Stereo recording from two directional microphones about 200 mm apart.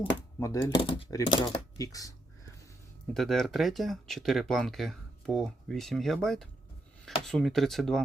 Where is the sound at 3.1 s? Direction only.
Centre (ahead or behind).